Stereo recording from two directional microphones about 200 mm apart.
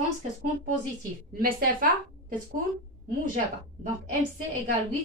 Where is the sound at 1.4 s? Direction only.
45° right (ahead or behind).